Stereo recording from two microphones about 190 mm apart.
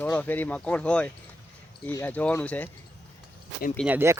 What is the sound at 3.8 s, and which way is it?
Speech, 10° right (ahead or behind).